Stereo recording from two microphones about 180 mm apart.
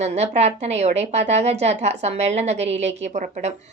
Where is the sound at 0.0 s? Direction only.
35° right (ahead or behind).